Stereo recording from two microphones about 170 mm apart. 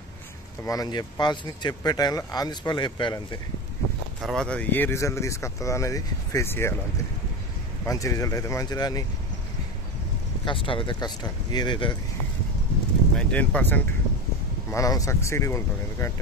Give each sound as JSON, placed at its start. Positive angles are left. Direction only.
{"t": 0.7, "sound": "speech", "side_deg": 25}
{"t": 4.2, "sound": "speech", "side_deg": 0}
{"t": 7.8, "sound": "speech", "side_deg": 20}
{"t": 10.4, "sound": "speech", "side_deg": 30}
{"t": 13.1, "sound": "speech", "side_deg": 5}